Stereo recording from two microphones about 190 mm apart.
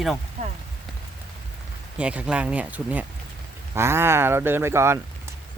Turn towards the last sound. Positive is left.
turn(degrees=-15)  # may be behind; listen again after turning